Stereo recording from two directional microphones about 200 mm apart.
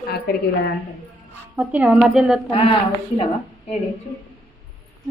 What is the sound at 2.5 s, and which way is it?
A woman's voice, 25° left (ahead or behind).